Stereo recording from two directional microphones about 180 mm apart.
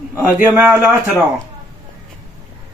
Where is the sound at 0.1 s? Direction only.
15° right (ahead or behind).